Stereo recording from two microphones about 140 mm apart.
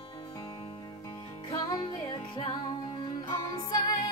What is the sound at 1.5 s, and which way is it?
Music, 30° left (ahead or behind).